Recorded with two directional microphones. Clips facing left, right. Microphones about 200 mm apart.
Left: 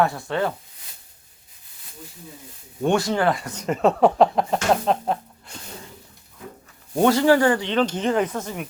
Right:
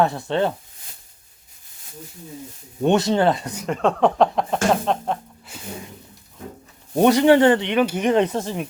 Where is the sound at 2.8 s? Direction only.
20° right (ahead or behind).